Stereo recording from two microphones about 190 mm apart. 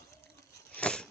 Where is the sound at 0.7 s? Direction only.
5° left (ahead or behind).